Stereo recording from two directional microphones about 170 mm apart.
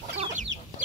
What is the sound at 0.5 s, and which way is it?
Chicken, 90° right.